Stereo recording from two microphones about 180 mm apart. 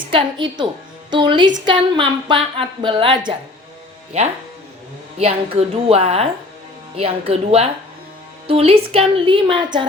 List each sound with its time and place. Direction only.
0.1 s a woman's voice: 25° right (ahead or behind)